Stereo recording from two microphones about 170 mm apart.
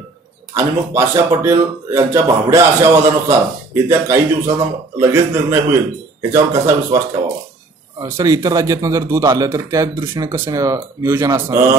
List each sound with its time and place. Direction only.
0.6 s a man's voice: 15° right (ahead or behind)